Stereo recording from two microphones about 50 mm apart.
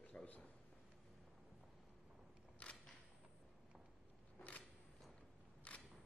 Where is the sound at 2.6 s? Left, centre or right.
Left.